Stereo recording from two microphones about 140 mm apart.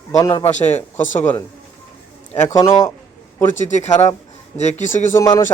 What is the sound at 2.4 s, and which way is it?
Speech, 20° left (ahead or behind).